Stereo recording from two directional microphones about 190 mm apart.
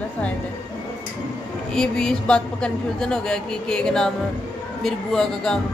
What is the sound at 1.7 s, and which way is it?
A woman's voice, 5° left (ahead or behind).